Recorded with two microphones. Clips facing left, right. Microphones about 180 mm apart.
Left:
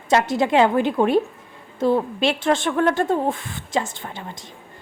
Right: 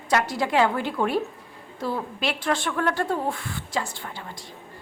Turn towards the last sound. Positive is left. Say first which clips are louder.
# left 5 dB
turn(degrees=20)  # may be behind; listen again after turning